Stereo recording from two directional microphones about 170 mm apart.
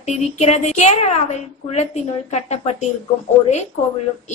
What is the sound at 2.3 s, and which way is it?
Speech, 40° left (ahead or behind).